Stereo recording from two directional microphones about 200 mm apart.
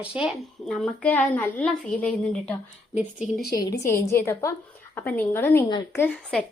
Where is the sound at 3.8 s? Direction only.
15° left (ahead or behind).